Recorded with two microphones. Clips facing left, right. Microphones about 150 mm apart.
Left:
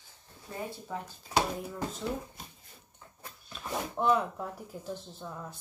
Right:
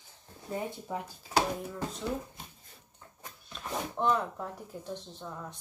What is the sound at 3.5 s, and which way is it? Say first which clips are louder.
Speech: left 1 dB; centre (ahead or behind).